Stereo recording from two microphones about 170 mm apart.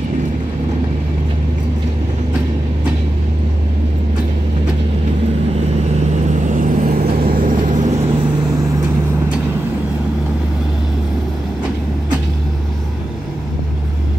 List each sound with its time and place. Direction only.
6.2 s vehicle: 45° right (ahead or behind)